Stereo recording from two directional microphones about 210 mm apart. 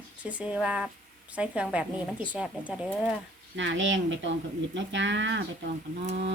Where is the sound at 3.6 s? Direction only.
60° right (ahead or behind).